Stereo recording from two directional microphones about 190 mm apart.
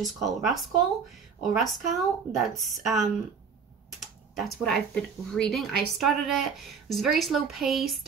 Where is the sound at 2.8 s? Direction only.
Centre (ahead or behind).